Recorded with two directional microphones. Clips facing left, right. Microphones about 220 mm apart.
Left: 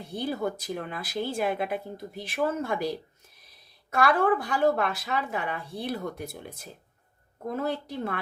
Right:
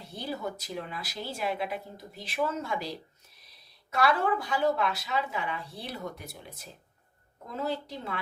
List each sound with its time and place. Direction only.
0.0 s speech: 50° left (ahead or behind)
3.9 s speech: 50° left (ahead or behind)
7.4 s speech: 55° left (ahead or behind)